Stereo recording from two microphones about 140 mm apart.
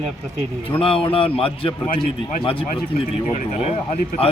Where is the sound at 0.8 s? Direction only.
40° left (ahead or behind).